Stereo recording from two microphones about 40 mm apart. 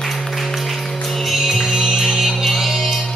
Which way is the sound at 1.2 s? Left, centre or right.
Centre.